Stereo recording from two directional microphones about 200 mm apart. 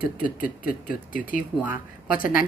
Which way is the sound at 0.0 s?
45° left (ahead or behind).